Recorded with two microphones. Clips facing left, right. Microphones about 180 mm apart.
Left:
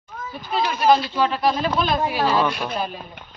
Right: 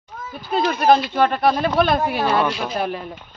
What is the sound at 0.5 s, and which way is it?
Speech, 50° right (ahead or behind).